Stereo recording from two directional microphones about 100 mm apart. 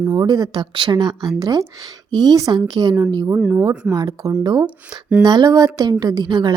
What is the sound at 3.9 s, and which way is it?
A woman's voice, 40° right (ahead or behind).